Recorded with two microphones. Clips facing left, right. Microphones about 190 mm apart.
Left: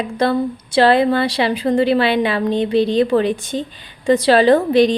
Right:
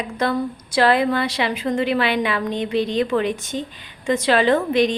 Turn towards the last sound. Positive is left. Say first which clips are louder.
# left 5 dB
turn(degrees=35)  # may be behind; listen again after turning